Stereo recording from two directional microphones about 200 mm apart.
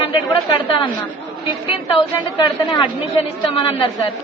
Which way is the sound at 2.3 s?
20° left (ahead or behind).